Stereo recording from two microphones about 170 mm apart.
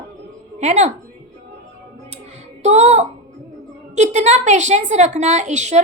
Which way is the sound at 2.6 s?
40° right (ahead or behind).